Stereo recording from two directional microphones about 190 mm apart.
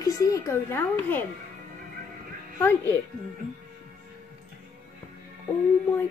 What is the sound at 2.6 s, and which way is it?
Speech, 15° left (ahead or behind).